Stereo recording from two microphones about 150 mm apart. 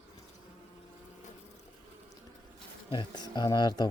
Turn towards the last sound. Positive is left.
turn(degrees=30)  # may be behind; listen again after turning